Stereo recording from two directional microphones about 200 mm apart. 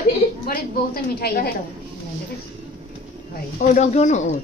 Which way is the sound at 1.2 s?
50° left (ahead or behind).